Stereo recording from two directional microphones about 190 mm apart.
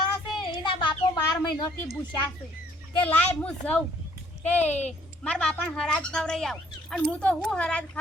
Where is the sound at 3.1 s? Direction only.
10° left (ahead or behind).